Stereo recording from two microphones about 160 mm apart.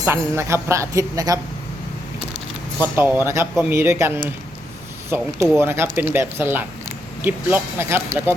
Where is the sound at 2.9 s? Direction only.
15° right (ahead or behind).